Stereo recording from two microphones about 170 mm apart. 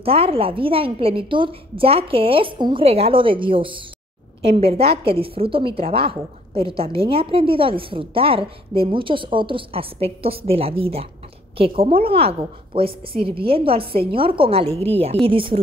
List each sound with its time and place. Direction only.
0.0 s a woman's voice: 35° right (ahead or behind)